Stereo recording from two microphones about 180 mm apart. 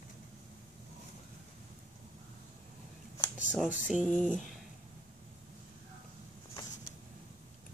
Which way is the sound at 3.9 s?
5° right (ahead or behind).